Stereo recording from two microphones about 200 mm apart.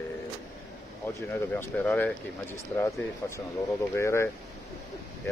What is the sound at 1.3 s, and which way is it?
Speech, 10° left (ahead or behind).